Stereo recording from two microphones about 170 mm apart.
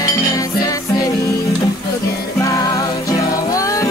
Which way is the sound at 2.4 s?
20° left (ahead or behind).